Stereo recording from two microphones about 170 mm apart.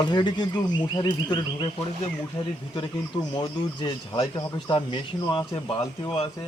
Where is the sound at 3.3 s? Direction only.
30° left (ahead or behind).